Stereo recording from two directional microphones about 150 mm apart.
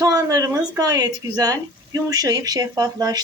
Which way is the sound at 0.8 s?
25° right (ahead or behind).